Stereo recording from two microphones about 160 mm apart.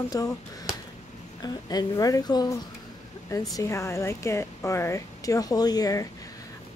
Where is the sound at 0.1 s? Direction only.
20° left (ahead or behind).